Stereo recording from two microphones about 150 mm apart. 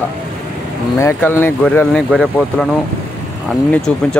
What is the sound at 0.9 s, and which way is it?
Speech, 15° left (ahead or behind).